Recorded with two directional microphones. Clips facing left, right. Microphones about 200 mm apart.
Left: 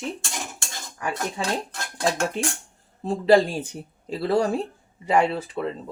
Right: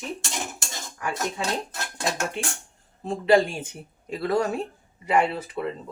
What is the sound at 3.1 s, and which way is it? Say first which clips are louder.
Speech: left 2 dB; 35° left (ahead or behind).